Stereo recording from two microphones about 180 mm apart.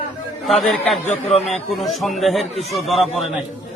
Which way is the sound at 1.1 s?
35° left (ahead or behind).